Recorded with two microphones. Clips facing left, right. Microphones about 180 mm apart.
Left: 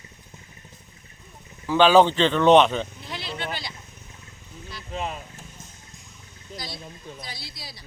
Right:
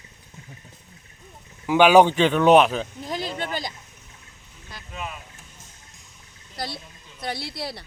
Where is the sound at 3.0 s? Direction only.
45° right (ahead or behind).